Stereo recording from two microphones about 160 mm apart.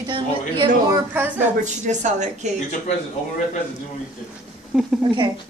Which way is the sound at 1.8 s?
50° right (ahead or behind).